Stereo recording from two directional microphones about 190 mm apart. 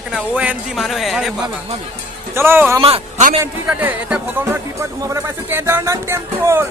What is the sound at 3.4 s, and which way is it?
Speech, 10° right (ahead or behind).